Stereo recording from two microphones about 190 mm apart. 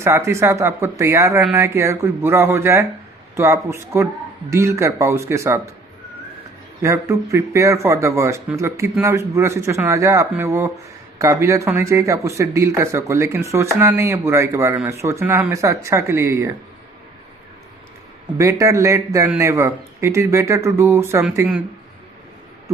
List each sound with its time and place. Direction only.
0.0 s speech: 15° right (ahead or behind)
6.8 s speech: 15° right (ahead or behind)
18.3 s speech: 15° right (ahead or behind)